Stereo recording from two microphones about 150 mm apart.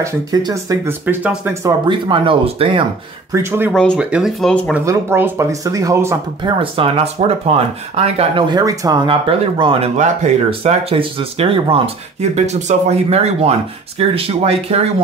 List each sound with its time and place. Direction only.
0.0 s speech: 25° right (ahead or behind)
1.0 s speech: 10° right (ahead or behind); by 2.8 s 35° right (ahead or behind)
3.3 s speech: 20° right (ahead or behind)
3.7 s speech: 5° left (ahead or behind)
4.0 s speech: 5° right (ahead or behind)
4.8 s speech: 15° right (ahead or behind)
6.4 s speech: 35° right (ahead or behind)
9.9 s speech: 55° right (ahead or behind)